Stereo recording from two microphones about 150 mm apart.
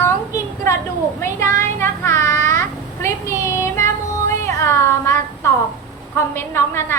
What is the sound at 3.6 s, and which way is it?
Child singing, 20° left (ahead or behind).